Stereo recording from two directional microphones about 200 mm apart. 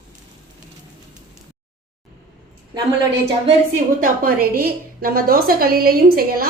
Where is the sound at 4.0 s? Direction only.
50° right (ahead or behind).